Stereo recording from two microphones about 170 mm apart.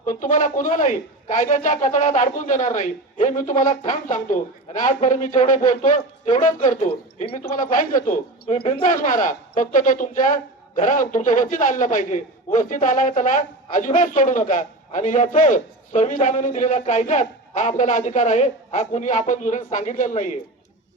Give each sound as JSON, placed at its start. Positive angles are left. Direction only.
{"t": 0.0, "sound": "a man's voice", "side_deg": 50}
{"t": 6.8, "sound": "a man's voice", "side_deg": 40}